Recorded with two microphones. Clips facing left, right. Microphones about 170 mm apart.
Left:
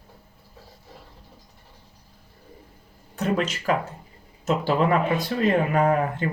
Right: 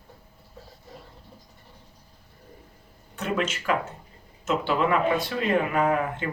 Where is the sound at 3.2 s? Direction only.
35° left (ahead or behind).